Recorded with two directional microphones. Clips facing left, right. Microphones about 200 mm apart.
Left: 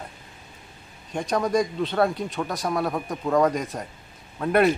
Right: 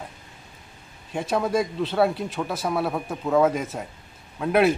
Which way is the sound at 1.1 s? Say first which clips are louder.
Even; 5° right (ahead or behind).